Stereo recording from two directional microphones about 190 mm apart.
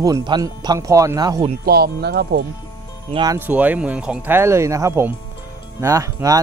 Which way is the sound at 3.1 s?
25° right (ahead or behind).